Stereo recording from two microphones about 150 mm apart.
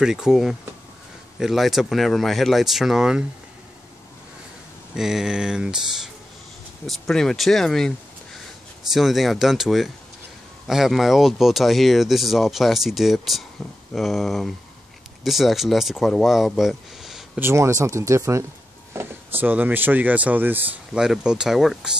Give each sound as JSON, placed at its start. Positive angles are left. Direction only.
{"t": 0.0, "sound": "speech", "side_deg": -5}
{"t": 4.9, "sound": "speech", "side_deg": -5}
{"t": 6.9, "sound": "speech", "side_deg": 0}
{"t": 8.9, "sound": "speech", "side_deg": 0}
{"t": 17.4, "sound": "speech", "side_deg": -15}